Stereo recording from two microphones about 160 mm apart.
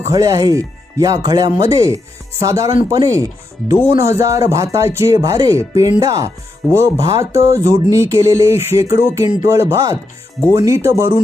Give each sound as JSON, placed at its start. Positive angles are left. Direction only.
{"t": 0.0, "sound": "speech", "side_deg": -25}